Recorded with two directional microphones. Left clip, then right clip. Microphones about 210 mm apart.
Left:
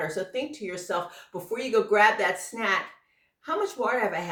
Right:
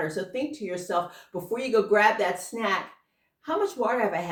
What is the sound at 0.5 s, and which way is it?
Speech, 15° left (ahead or behind).